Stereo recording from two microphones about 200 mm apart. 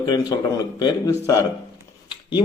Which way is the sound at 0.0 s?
20° left (ahead or behind).